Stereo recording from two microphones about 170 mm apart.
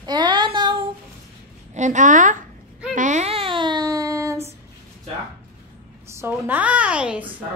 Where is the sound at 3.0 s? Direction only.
45° right (ahead or behind); by 4.4 s 20° right (ahead or behind).